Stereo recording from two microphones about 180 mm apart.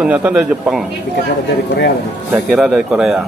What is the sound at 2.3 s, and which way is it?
Speech, centre (ahead or behind).